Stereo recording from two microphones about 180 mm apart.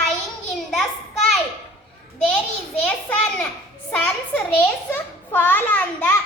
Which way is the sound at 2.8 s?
10° left (ahead or behind).